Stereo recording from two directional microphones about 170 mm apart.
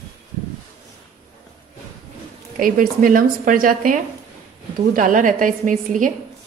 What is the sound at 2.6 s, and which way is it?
A woman's voice, 55° right (ahead or behind).